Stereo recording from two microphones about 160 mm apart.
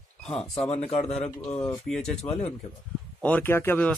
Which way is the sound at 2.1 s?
40° left (ahead or behind).